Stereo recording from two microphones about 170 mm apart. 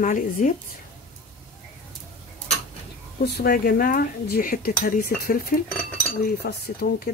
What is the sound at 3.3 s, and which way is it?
Speech, 65° left (ahead or behind).